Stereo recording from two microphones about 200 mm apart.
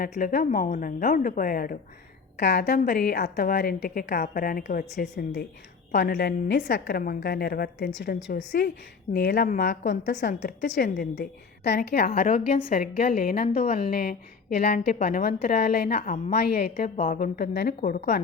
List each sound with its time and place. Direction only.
0.2 s a woman's voice: 45° left (ahead or behind)
2.4 s a woman's voice: 60° left (ahead or behind)
7.0 s a woman's voice: 50° left (ahead or behind)
9.5 s a woman's voice: 40° left (ahead or behind)
10.4 s a woman's voice: 60° left (ahead or behind)